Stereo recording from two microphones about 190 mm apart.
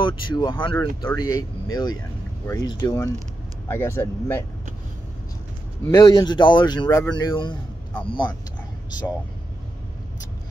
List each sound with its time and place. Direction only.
0.0 s speech: 25° left (ahead or behind)
5.9 s speech: 20° left (ahead or behind)